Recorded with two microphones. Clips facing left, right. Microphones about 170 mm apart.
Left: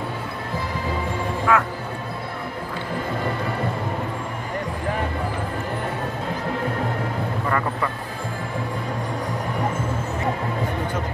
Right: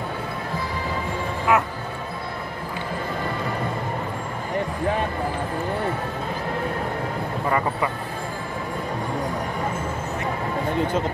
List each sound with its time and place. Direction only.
1.5 s speech: 20° right (ahead or behind)